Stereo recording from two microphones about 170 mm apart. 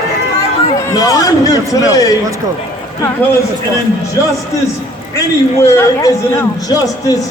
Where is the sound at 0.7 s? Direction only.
20° left (ahead or behind).